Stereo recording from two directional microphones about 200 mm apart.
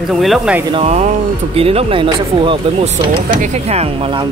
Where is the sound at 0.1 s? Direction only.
Centre (ahead or behind).